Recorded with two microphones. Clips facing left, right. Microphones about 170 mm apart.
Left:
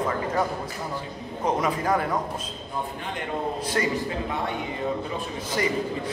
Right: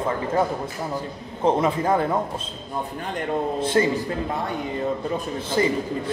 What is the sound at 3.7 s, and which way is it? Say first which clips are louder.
Speech: right 6 dB; 30° right (ahead or behind).